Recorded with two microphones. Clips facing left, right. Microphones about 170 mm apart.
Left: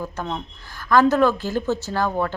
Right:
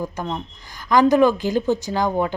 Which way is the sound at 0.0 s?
10° right (ahead or behind).